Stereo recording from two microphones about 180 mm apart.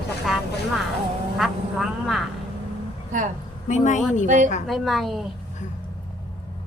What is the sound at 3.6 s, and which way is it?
Speech, 45° left (ahead or behind).